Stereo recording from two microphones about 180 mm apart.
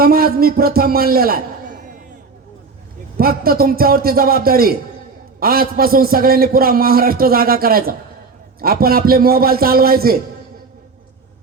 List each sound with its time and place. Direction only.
0.0 s a man's voice: 55° right (ahead or behind)
3.2 s a man's voice: 55° right (ahead or behind)